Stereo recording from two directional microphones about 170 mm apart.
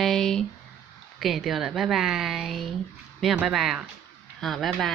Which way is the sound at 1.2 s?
Centre (ahead or behind).